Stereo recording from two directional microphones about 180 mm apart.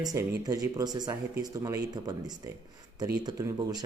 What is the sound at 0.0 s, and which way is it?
Speech, 20° right (ahead or behind).